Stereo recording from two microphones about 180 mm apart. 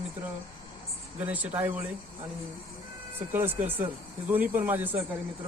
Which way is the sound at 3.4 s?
10° right (ahead or behind).